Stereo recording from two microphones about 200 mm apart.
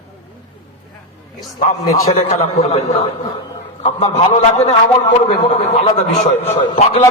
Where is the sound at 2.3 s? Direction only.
30° left (ahead or behind).